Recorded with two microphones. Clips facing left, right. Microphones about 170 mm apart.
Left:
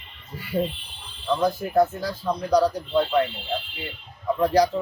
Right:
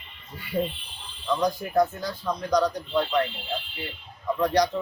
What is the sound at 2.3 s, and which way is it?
Speech, 30° left (ahead or behind).